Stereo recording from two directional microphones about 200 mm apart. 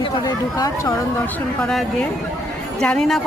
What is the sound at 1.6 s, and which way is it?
A woman's voice, 5° left (ahead or behind).